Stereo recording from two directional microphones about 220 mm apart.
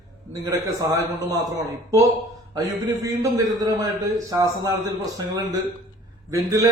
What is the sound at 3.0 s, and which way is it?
A man's voice, 15° right (ahead or behind).